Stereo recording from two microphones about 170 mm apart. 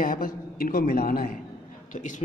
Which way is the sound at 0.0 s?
55° left (ahead or behind).